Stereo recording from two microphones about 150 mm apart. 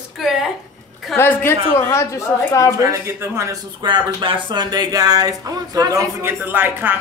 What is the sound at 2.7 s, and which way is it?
Speech, 25° right (ahead or behind).